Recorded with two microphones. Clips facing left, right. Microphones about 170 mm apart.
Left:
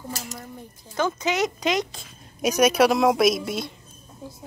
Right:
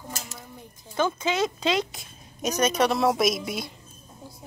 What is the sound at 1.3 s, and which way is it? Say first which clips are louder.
Speech: left 1 dB; 15° left (ahead or behind).